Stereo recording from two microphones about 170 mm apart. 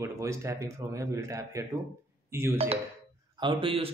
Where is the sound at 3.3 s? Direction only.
30° right (ahead or behind).